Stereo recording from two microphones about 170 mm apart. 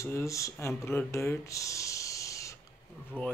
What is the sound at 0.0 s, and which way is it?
Speech, 15° left (ahead or behind).